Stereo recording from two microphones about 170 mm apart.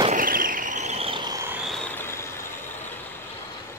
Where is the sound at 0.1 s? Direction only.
55° right (ahead or behind); by 1.5 s 20° right (ahead or behind).